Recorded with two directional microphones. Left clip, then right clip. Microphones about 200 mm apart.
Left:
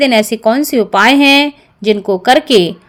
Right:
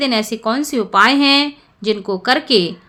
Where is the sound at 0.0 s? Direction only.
20° left (ahead or behind).